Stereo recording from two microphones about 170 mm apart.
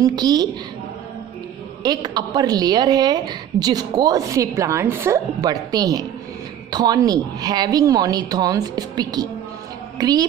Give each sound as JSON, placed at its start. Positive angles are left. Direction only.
{"t": 0.0, "sound": "a woman's voice", "side_deg": -25}
{"t": 1.8, "sound": "a woman's voice", "side_deg": -25}